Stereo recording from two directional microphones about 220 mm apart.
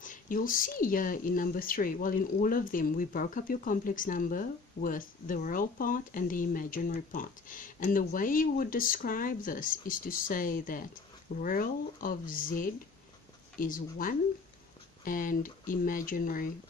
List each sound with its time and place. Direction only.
0.0 s speech: 35° left (ahead or behind)